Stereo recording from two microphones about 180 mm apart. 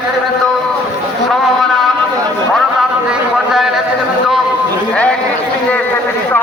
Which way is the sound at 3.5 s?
Centre (ahead or behind).